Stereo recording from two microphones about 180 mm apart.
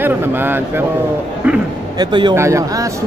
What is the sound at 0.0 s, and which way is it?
Speech, 10° right (ahead or behind).